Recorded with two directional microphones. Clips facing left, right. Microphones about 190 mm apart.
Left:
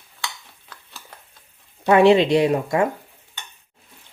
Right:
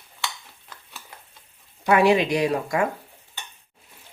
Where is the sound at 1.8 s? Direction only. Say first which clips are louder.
Left 4 dB; 25° left (ahead or behind).